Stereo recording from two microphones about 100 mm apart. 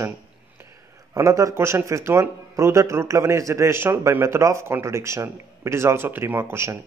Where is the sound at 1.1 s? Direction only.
35° right (ahead or behind).